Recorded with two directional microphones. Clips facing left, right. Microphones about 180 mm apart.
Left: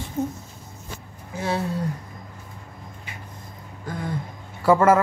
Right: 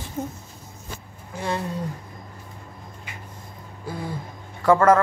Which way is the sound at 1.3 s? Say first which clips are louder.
Left 1 dB; 5° left (ahead or behind).